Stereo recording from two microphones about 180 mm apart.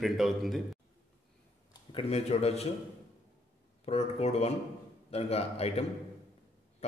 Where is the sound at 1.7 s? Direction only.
30° left (ahead or behind).